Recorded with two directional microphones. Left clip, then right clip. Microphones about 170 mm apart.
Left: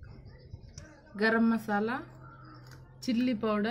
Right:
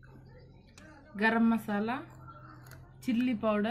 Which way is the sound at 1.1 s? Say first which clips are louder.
Left 1 dB; 10° left (ahead or behind).